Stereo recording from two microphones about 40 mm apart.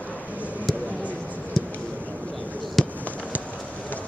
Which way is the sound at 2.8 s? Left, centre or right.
Centre.